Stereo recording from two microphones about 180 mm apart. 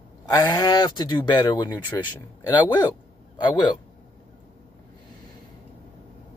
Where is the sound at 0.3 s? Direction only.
20° left (ahead or behind).